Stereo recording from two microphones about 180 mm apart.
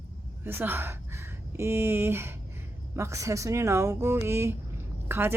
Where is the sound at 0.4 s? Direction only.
10° right (ahead or behind).